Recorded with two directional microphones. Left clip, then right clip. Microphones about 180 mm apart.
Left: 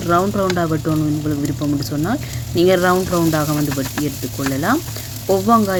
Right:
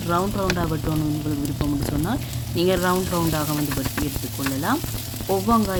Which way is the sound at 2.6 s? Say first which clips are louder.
Left 7 dB; 25° left (ahead or behind).